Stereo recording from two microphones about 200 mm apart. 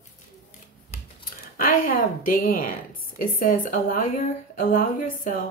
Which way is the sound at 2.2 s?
45° left (ahead or behind).